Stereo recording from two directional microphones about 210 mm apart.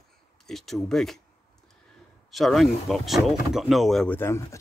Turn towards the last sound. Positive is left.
turn(degrees=10)  # may be behind; listen again after turning